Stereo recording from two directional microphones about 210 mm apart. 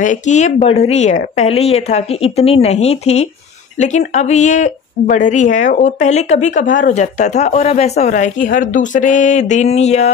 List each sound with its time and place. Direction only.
0.0 s speech: 35° left (ahead or behind)